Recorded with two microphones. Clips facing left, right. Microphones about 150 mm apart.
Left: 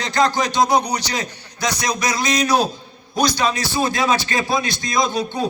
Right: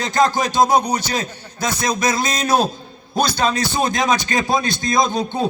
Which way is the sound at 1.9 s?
25° right (ahead or behind).